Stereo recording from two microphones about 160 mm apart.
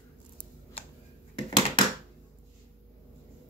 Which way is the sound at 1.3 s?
25° left (ahead or behind).